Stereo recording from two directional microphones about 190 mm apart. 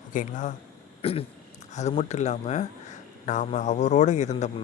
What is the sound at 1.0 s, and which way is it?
Speech, 30° left (ahead or behind).